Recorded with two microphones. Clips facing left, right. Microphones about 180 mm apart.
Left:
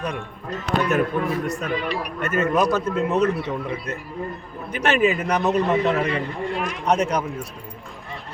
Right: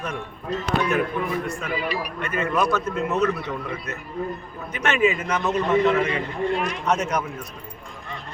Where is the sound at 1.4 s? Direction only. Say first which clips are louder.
Left 3 dB; 40° left (ahead or behind).